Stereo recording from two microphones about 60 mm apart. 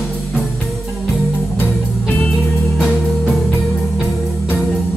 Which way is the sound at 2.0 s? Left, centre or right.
Left.